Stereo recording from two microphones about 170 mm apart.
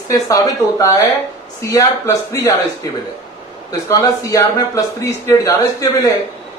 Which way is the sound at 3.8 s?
20° left (ahead or behind).